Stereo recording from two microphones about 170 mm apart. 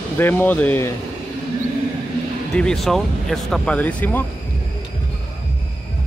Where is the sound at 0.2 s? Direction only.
10° left (ahead or behind).